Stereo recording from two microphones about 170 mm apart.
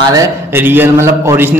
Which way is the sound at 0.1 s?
15° right (ahead or behind).